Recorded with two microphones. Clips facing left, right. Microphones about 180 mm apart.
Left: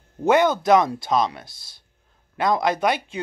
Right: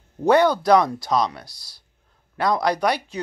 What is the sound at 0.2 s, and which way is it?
Speech, 20° left (ahead or behind).